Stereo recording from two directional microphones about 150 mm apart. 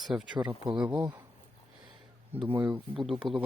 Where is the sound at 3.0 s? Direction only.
Centre (ahead or behind).